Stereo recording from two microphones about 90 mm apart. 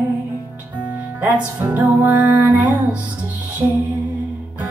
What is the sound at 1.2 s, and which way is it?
Music, 20° right (ahead or behind).